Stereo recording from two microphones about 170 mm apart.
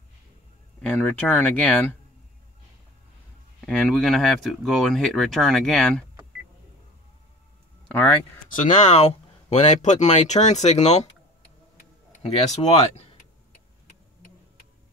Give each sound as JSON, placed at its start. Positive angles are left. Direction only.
{"t": 0.8, "sound": "speech", "side_deg": 10}
{"t": 3.6, "sound": "speech", "side_deg": 5}
{"t": 8.5, "sound": "speech", "side_deg": 45}
{"t": 12.2, "sound": "speech", "side_deg": 35}